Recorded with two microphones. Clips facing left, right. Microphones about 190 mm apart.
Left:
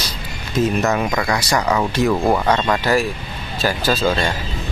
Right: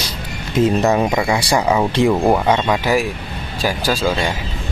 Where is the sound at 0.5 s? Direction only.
25° right (ahead or behind).